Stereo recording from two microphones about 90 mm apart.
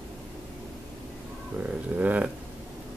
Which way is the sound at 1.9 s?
15° right (ahead or behind).